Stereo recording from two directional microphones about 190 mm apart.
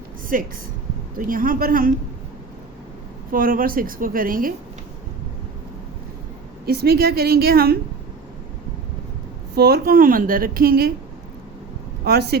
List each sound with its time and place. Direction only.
0.3 s a woman's voice: 45° right (ahead or behind)
3.3 s a woman's voice: 50° right (ahead or behind)
6.7 s a woman's voice: 55° right (ahead or behind)
9.6 s a woman's voice: 55° right (ahead or behind)
12.0 s speech: 55° right (ahead or behind)